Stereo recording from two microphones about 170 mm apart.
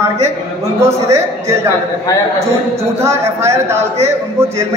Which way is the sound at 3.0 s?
15° right (ahead or behind).